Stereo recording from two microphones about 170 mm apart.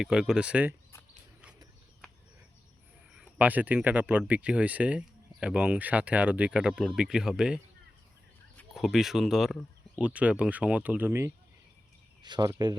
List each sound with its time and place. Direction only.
0.0 s speech: 5° right (ahead or behind)
3.1 s speech: 5° right (ahead or behind)
12.2 s speech: 25° right (ahead or behind)